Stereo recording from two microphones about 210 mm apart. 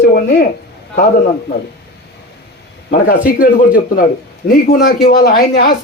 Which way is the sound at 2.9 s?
40° left (ahead or behind).